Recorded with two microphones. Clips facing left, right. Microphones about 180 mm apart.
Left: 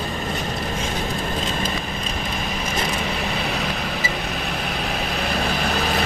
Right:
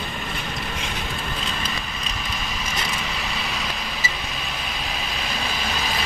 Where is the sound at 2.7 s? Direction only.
55° left (ahead or behind).